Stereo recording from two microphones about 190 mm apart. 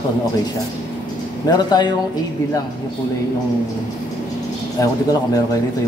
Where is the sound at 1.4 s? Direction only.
20° left (ahead or behind).